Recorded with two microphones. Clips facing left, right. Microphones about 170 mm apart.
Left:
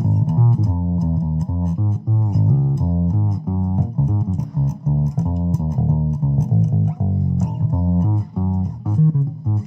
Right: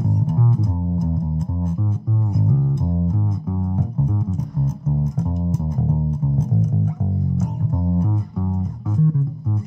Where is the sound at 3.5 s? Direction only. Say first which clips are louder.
Left 4 dB; 35° left (ahead or behind).